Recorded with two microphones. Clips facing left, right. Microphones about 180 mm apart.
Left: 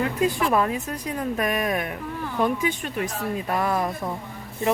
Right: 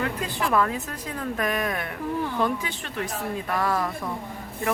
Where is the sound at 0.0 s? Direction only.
20° left (ahead or behind).